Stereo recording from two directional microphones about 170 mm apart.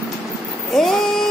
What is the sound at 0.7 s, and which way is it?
Vehicle, centre (ahead or behind).